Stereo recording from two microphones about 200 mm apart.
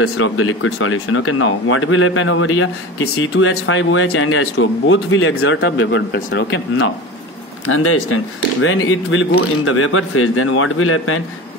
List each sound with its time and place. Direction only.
0.0 s speech: 90° left; by 6.9 s 65° left (ahead or behind)
7.6 s speech: 90° left